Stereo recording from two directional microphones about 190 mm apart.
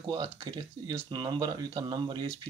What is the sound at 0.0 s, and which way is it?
Speech, 25° right (ahead or behind).